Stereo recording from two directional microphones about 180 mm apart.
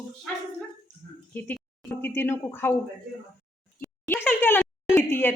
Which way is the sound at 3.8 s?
10° left (ahead or behind).